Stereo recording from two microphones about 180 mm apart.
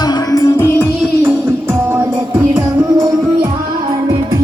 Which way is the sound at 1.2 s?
15° right (ahead or behind).